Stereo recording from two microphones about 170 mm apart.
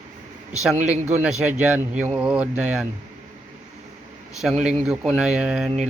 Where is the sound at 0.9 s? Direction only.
40° right (ahead or behind).